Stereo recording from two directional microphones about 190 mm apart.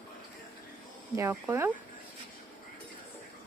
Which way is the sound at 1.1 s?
15° right (ahead or behind).